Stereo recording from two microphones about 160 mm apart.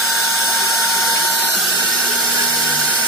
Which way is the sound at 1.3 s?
Centre (ahead or behind).